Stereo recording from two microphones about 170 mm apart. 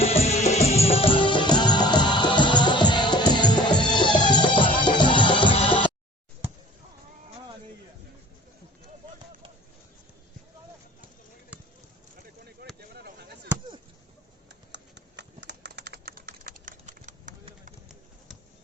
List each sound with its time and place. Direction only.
0.0 s music: 35° left (ahead or behind)
12.9 s a sound: 70° right (ahead or behind)
14.7 s typing: 90° right; by 17.3 s 45° right (ahead or behind)